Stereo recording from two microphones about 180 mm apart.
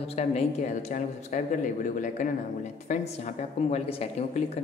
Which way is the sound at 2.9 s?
40° left (ahead or behind).